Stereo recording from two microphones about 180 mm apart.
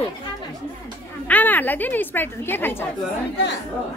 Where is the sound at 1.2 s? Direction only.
10° left (ahead or behind).